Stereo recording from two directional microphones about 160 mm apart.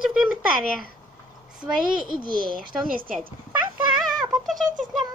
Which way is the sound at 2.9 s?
60° right (ahead or behind).